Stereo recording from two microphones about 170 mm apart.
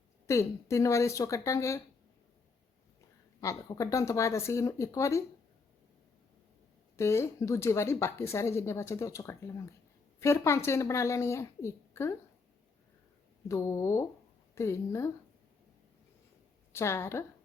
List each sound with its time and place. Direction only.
0.3 s speech: 15° left (ahead or behind)
3.4 s speech: 20° left (ahead or behind)
6.9 s speech: 15° left (ahead or behind)
13.5 s speech: 15° left (ahead or behind)
16.7 s speech: 15° left (ahead or behind)